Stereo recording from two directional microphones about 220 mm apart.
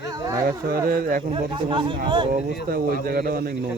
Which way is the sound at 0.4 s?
40° right (ahead or behind).